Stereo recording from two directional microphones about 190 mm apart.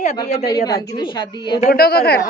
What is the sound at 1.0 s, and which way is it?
Speech, 25° left (ahead or behind).